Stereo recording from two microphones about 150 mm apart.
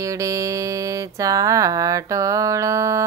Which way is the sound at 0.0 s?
20° right (ahead or behind).